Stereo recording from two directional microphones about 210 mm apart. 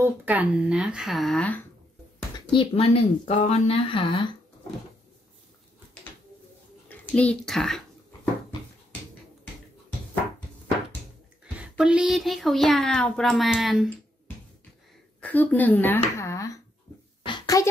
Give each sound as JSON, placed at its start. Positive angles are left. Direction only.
{"t": 0.0, "sound": "a child's voice", "side_deg": -10}
{"t": 2.5, "sound": "speech", "side_deg": 25}
{"t": 6.9, "sound": "speech", "side_deg": 5}
{"t": 11.7, "sound": "a child's voice", "side_deg": -5}
{"t": 15.1, "sound": "speech", "side_deg": 10}
{"t": 17.2, "sound": "a sound", "side_deg": 20}